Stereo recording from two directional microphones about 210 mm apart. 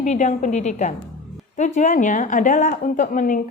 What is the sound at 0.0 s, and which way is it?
A woman's voice, 35° left (ahead or behind).